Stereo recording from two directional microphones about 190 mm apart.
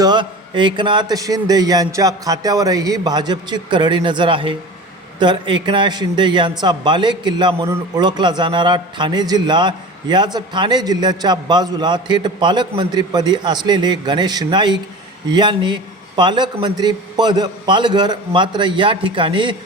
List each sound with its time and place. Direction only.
0.0 s a man's voice: 25° right (ahead or behind)